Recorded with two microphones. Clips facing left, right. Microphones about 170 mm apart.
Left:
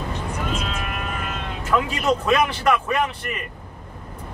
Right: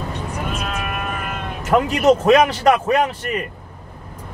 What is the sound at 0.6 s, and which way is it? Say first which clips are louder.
Sheep: right 3 dB; 55° right (ahead or behind).